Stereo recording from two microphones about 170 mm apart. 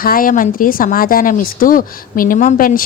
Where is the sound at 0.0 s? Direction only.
55° left (ahead or behind).